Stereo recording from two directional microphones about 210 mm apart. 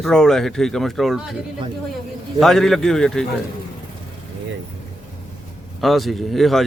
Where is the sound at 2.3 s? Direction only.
Centre (ahead or behind).